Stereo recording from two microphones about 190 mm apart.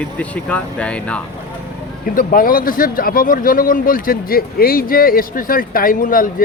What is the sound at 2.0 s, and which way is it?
Speech, 45° left (ahead or behind).